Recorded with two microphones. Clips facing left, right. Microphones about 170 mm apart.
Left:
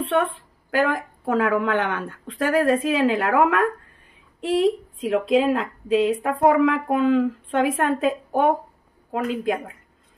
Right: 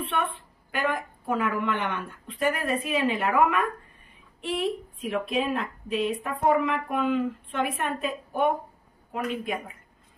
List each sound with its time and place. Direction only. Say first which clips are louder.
0.7 s speech: left 6 dB; 90° left